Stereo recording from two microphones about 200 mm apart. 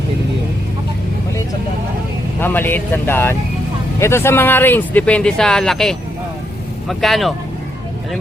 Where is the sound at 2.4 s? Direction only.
10° left (ahead or behind).